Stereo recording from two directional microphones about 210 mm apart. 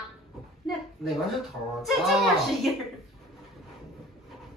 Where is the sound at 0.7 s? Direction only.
Centre (ahead or behind).